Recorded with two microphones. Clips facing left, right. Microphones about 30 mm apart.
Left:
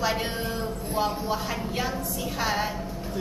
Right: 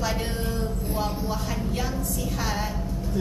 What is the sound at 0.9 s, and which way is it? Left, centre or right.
Speech, centre.